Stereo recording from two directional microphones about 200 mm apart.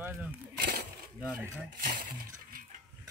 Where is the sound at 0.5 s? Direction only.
50° right (ahead or behind).